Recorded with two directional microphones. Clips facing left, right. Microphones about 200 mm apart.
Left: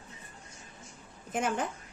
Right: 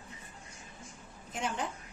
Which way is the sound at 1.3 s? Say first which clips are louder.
Left 5 dB; 50° left (ahead or behind).